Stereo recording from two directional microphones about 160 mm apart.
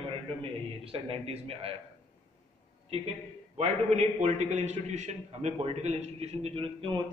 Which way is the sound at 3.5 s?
45° right (ahead or behind).